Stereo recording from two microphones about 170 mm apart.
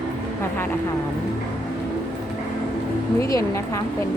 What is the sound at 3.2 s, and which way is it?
Speech, 20° left (ahead or behind).